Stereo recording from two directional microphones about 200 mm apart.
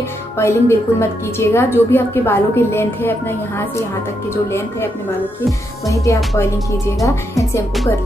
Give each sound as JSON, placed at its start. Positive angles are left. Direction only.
{"t": 0.4, "sound": "a woman's voice", "side_deg": 15}
{"t": 5.9, "sound": "a woman's voice", "side_deg": 15}